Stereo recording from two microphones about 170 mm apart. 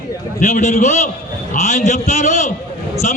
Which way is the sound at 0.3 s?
50° left (ahead or behind).